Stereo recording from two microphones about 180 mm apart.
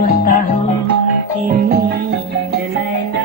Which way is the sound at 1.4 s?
55° right (ahead or behind).